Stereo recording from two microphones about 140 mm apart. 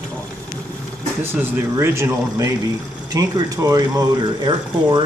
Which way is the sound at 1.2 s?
20° right (ahead or behind).